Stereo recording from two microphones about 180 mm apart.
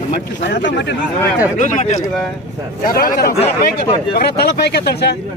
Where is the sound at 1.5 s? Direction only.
40° left (ahead or behind).